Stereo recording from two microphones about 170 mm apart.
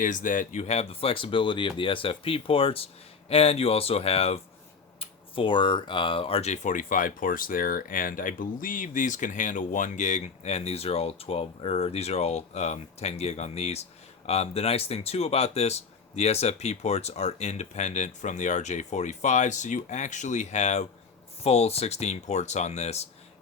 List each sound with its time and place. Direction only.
0.0 s speech: 50° left (ahead or behind)